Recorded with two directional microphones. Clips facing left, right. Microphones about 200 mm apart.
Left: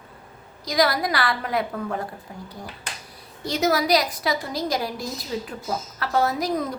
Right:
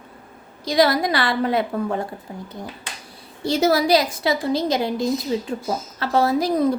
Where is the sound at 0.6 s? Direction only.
25° right (ahead or behind).